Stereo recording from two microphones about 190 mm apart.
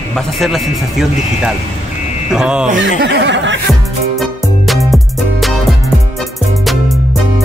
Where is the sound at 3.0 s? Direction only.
70° right (ahead or behind).